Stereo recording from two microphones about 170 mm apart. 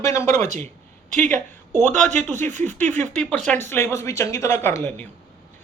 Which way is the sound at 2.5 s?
45° right (ahead or behind).